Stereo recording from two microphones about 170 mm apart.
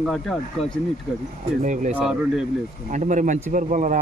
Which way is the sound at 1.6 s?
45° right (ahead or behind).